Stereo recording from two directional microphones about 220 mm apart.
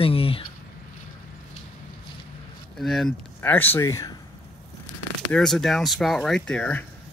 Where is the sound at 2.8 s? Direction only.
Centre (ahead or behind).